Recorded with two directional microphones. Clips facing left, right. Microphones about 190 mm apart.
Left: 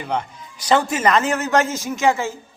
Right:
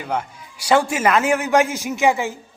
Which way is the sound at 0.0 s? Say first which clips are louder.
Even; 5° right (ahead or behind).